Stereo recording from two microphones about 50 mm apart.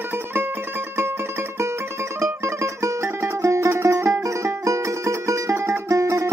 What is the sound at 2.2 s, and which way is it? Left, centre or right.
Music, right.